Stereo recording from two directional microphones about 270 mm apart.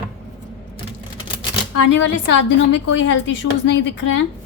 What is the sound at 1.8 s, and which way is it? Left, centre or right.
A woman's voice, left.